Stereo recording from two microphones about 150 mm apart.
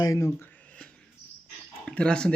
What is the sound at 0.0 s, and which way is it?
Speech, 20° left (ahead or behind).